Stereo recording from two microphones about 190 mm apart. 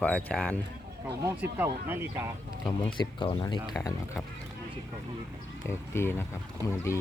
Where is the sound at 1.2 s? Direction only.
10° right (ahead or behind).